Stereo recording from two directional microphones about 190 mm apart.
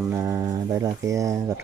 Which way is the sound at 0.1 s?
15° right (ahead or behind).